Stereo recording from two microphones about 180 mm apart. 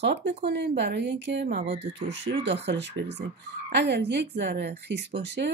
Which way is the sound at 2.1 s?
80° right.